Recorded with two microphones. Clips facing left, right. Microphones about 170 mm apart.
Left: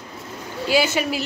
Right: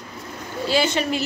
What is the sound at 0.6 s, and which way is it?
Speech, 5° left (ahead or behind).